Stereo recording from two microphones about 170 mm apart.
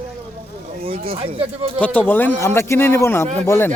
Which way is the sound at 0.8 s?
35° right (ahead or behind).